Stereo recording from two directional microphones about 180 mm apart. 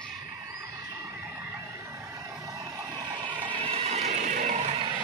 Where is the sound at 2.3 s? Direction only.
15° right (ahead or behind).